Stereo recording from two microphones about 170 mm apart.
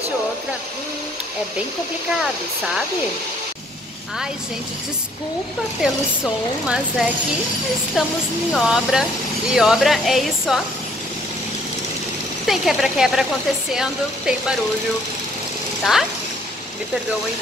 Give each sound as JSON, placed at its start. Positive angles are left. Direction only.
{"t": 5.8, "sound": "speech", "side_deg": 0}
{"t": 8.5, "sound": "speech", "side_deg": 0}
{"t": 12.4, "sound": "speech", "side_deg": 0}
{"t": 15.8, "sound": "speech", "side_deg": 0}